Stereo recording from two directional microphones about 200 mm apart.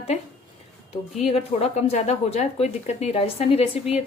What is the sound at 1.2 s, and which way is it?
A woman's voice, 30° left (ahead or behind).